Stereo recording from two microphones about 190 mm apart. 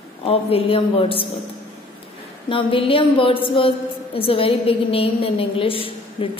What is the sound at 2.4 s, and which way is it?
A woman's voice, 25° left (ahead or behind).